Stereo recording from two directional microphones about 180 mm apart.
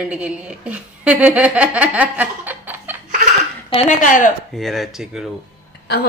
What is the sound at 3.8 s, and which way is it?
Speech, 45° left (ahead or behind).